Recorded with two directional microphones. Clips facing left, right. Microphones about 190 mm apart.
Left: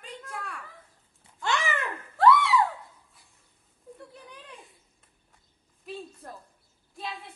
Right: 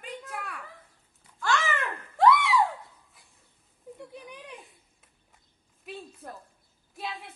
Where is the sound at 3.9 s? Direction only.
15° right (ahead or behind).